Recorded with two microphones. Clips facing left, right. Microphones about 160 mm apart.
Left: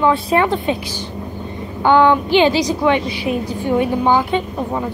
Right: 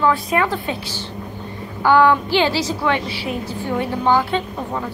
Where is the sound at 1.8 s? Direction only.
20° left (ahead or behind).